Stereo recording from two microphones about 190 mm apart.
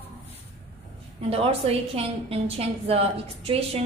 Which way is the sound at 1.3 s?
30° right (ahead or behind).